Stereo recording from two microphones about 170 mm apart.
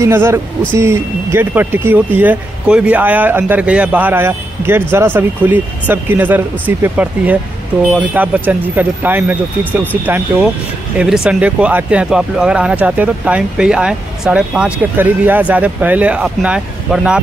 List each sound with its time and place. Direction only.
0.0 s speech: 15° right (ahead or behind)